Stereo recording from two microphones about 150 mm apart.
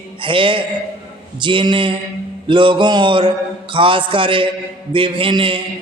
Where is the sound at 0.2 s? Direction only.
35° right (ahead or behind).